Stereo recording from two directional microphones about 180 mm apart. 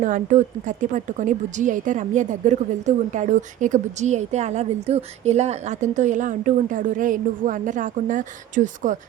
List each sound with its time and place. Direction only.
0.0 s speech: 45° right (ahead or behind)